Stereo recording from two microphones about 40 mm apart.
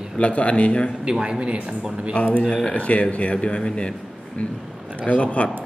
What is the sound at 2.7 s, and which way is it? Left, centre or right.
Speech, left.